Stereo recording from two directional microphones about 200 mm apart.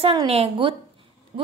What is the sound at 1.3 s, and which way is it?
Speech, 40° right (ahead or behind).